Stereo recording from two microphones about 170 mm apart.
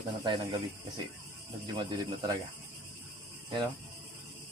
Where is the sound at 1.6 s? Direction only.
25° right (ahead or behind).